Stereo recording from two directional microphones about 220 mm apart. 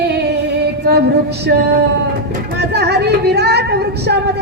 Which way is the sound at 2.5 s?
50° right (ahead or behind).